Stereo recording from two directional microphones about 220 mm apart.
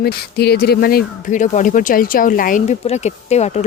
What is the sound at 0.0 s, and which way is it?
Speech, 45° left (ahead or behind).